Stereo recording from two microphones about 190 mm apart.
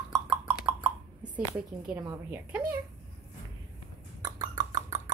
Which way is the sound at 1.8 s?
10° right (ahead or behind).